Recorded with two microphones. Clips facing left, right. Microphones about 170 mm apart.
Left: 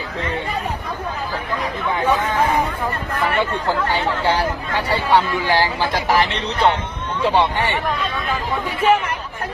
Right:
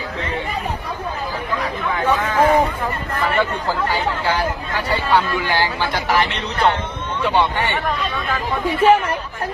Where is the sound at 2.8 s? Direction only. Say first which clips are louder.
Even; centre (ahead or behind).